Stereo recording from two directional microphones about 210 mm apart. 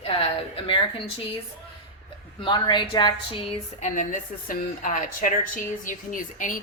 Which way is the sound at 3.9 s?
40° left (ahead or behind).